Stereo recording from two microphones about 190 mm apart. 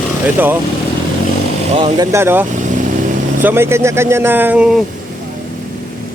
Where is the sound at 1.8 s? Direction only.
25° right (ahead or behind); by 4.8 s 5° right (ahead or behind).